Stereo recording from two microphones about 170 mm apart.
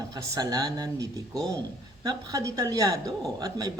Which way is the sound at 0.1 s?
20° right (ahead or behind).